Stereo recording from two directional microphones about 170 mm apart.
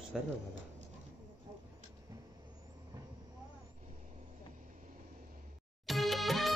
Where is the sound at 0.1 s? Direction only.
Centre (ahead or behind).